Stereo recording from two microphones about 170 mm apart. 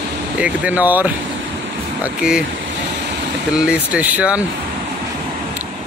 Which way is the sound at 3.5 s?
5° right (ahead or behind).